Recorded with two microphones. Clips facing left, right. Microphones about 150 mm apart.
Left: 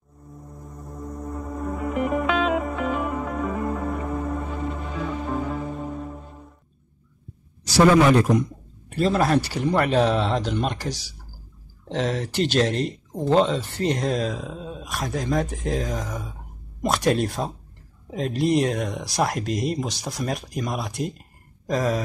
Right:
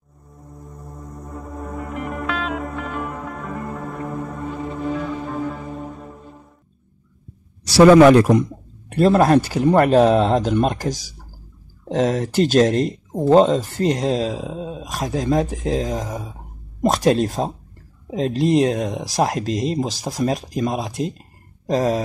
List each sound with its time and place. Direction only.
1.1 s music: centre (ahead or behind)
7.7 s a man's voice: 80° right
8.9 s speech: 50° right (ahead or behind)